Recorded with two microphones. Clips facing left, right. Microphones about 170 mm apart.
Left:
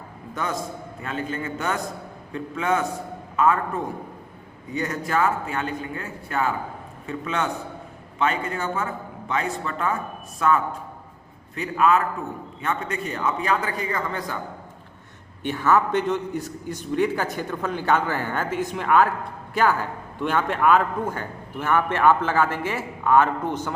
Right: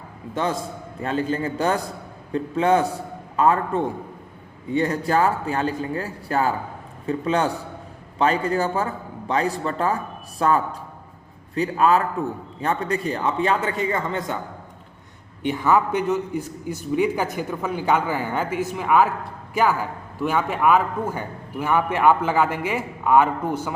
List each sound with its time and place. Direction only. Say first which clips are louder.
0.3 s a man's voice: right 4 dB; 30° right (ahead or behind)
15.4 s a man's voice: right 1 dB; 15° right (ahead or behind)
20.1 s a man's voice: right 1 dB; 10° right (ahead or behind)